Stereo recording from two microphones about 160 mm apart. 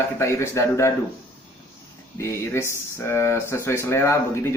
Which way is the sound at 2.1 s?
15° left (ahead or behind).